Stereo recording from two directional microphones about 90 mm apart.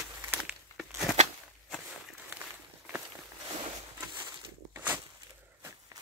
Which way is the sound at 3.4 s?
65° right (ahead or behind).